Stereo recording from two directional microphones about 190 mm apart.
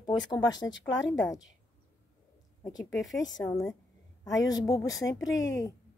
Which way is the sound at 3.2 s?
20° left (ahead or behind).